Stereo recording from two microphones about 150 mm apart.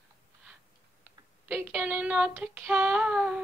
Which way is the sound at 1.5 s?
10° right (ahead or behind).